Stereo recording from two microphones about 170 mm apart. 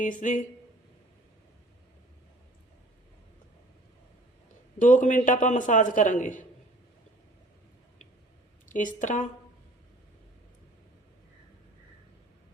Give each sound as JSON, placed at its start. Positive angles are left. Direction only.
{"t": 0.0, "sound": "a man's voice", "side_deg": 50}
{"t": 4.8, "sound": "a man's voice", "side_deg": 50}
{"t": 8.7, "sound": "a man's voice", "side_deg": 50}